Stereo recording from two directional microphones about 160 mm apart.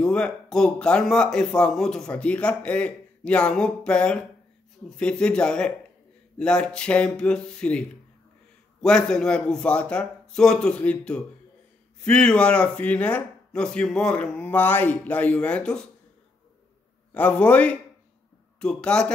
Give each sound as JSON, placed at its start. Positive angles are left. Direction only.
{"t": 0.0, "sound": "speech", "side_deg": 5}
{"t": 8.8, "sound": "speech", "side_deg": 5}
{"t": 17.1, "sound": "speech", "side_deg": 10}